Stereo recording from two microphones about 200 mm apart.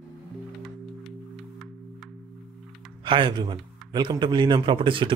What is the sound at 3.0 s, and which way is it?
A man's voice, 25° right (ahead or behind).